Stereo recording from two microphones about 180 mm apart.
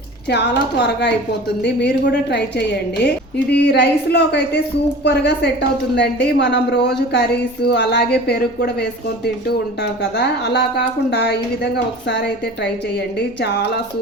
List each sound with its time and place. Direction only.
0.3 s a woman's voice: 70° left (ahead or behind)
13.4 s a woman's voice: 65° left (ahead or behind)